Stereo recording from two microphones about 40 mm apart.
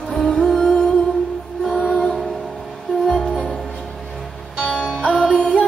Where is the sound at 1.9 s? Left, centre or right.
Left.